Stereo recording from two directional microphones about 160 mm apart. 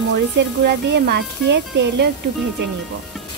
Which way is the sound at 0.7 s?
90° right.